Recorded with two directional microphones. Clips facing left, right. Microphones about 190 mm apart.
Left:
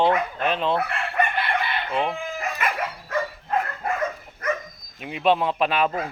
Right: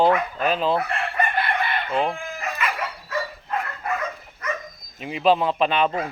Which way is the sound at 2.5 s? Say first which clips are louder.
Left 1 dB; 50° left (ahead or behind).